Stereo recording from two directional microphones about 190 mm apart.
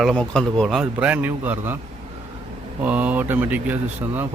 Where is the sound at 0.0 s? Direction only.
Centre (ahead or behind).